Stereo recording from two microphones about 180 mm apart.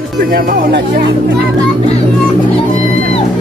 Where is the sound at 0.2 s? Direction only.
55° right (ahead or behind).